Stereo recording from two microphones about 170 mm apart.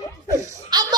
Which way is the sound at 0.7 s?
25° right (ahead or behind).